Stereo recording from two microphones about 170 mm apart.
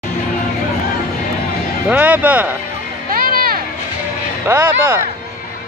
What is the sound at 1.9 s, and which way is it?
Speech, 10° right (ahead or behind).